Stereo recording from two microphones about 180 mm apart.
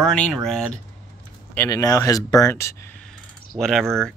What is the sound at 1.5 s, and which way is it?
Speech, 20° left (ahead or behind).